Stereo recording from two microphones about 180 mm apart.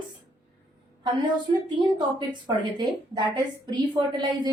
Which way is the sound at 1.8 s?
25° right (ahead or behind).